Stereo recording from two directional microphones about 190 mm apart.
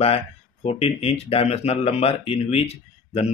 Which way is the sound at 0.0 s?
30° left (ahead or behind).